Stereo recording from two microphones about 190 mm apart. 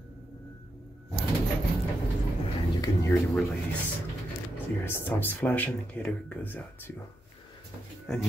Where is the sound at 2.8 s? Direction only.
15° left (ahead or behind).